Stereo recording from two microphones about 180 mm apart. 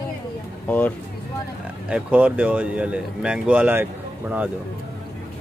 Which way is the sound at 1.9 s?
5° right (ahead or behind).